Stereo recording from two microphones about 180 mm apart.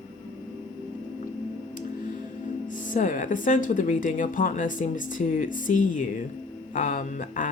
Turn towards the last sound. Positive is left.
turn(degrees=45)  # may be behind; listen again after turning